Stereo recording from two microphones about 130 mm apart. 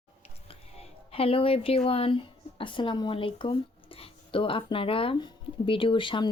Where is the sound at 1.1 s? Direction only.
45° left (ahead or behind).